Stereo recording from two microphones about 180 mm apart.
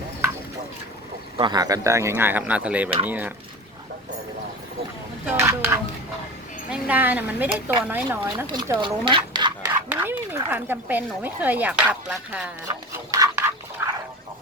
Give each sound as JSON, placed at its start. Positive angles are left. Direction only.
{"t": 1.4, "sound": "speech", "side_deg": -25}
{"t": 5.2, "sound": "speech", "side_deg": -15}
{"t": 8.8, "sound": "speech", "side_deg": -25}
{"t": 9.6, "sound": "speech", "side_deg": -10}
{"t": 12.6, "sound": "speech", "side_deg": -20}
{"t": 13.8, "sound": "a sound", "side_deg": -15}